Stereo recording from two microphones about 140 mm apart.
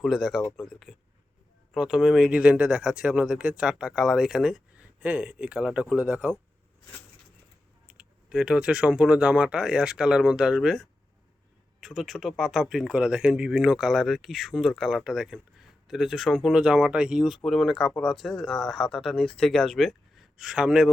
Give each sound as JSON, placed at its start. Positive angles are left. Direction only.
{"t": 0.0, "sound": "speech", "side_deg": 0}
{"t": 7.9, "sound": "speech", "side_deg": -5}